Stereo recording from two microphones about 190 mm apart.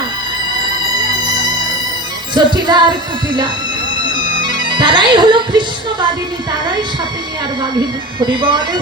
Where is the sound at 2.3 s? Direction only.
25° right (ahead or behind).